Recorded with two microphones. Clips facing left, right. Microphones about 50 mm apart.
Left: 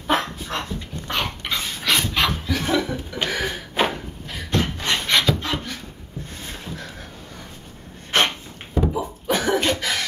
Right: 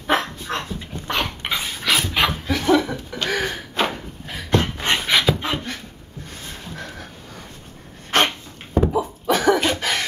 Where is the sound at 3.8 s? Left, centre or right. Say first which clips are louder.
Left 1 dB; centre.